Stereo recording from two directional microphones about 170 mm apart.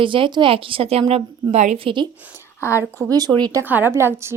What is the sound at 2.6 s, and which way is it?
Speech, 15° left (ahead or behind).